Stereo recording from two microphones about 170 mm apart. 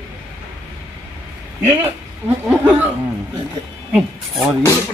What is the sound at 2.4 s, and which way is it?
Speech, 5° right (ahead or behind).